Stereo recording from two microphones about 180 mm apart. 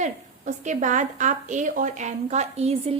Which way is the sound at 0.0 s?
40° right (ahead or behind).